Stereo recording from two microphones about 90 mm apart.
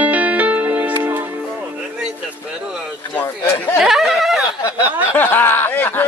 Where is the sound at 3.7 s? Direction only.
5° right (ahead or behind).